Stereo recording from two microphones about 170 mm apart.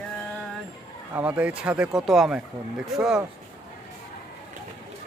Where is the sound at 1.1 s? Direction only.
10° right (ahead or behind).